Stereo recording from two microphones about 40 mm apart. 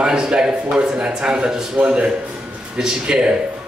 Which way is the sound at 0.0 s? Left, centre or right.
Right.